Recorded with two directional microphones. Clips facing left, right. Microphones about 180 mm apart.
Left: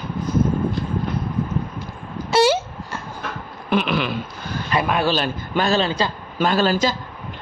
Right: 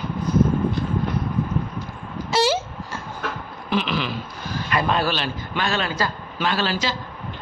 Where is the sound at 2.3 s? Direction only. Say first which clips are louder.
Left 4 dB; 60° left (ahead or behind).